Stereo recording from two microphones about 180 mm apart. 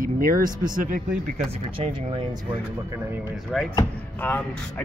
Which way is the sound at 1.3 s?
35° right (ahead or behind).